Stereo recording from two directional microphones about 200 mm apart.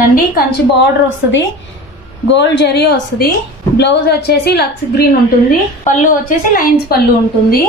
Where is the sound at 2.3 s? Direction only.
60° left (ahead or behind).